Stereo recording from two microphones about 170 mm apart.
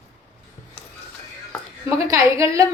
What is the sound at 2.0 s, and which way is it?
Speech, 20° right (ahead or behind).